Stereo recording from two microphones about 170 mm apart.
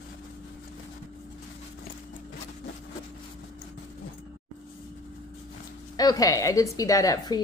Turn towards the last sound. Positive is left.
turn(degrees=25)  # may be behind; listen again after turning